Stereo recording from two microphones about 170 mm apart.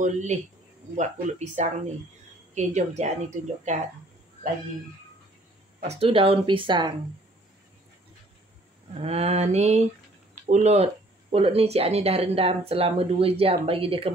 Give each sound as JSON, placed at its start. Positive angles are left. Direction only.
{"t": 0.0, "sound": "speech", "side_deg": -45}
{"t": 5.8, "sound": "speech", "side_deg": -35}
{"t": 9.0, "sound": "speech", "side_deg": -40}